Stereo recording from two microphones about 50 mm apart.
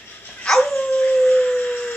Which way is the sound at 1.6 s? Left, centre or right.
Left.